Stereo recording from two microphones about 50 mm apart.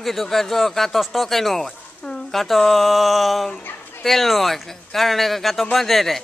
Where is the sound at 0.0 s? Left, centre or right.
Centre.